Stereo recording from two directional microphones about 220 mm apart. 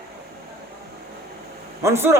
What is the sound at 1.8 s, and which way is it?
Speech, 10° right (ahead or behind).